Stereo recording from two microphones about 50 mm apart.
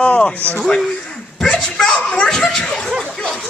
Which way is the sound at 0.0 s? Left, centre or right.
Left.